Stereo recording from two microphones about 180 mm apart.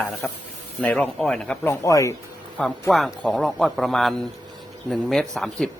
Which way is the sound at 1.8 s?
20° left (ahead or behind).